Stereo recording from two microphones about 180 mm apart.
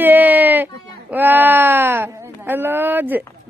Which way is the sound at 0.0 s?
10° right (ahead or behind).